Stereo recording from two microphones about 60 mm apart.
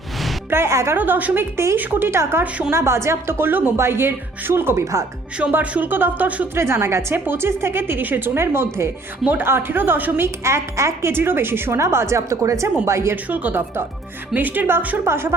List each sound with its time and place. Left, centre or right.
0.5 s a woman's voice: right
0.9 s a woman's voice: right
1.5 s a woman's voice: right
2.4 s speech: right
2.7 s a woman's voice: right
5.7 s speech: right
6.5 s a woman's voice: right
9.2 s a woman's voice: right
11.1 s a woman's voice: right
12.8 s a woman's voice: right
13.2 s speech: right
15.0 s a woman's voice: right